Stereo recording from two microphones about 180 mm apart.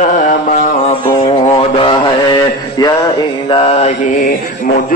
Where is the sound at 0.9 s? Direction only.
30° left (ahead or behind); by 4.8 s 45° left (ahead or behind).